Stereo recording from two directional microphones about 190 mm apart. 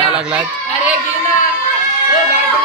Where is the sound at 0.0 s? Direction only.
5° right (ahead or behind).